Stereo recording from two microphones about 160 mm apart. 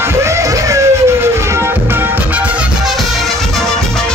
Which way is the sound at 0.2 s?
15° right (ahead or behind).